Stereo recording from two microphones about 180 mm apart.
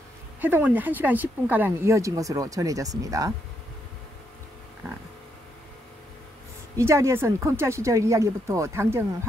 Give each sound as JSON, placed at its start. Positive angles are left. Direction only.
{"t": 0.4, "sound": "speech", "side_deg": -10}
{"t": 6.8, "sound": "speech", "side_deg": -15}